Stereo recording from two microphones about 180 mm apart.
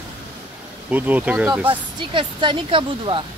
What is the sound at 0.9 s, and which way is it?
Speech, 10° right (ahead or behind).